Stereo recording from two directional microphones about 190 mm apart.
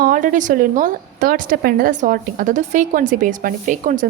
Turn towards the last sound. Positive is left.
turn(degrees=-40)  # may be behind; listen again after turning